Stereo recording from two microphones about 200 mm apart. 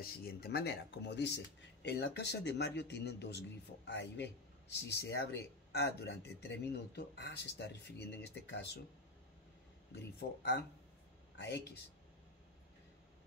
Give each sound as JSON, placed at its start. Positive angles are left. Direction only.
{"t": 0.0, "sound": "speech", "side_deg": 50}
{"t": 10.1, "sound": "speech", "side_deg": 60}